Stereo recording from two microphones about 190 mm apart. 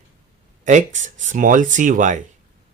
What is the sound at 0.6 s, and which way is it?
Speech, 40° right (ahead or behind).